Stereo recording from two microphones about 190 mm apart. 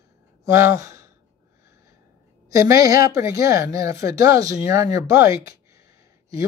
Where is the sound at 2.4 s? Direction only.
15° right (ahead or behind).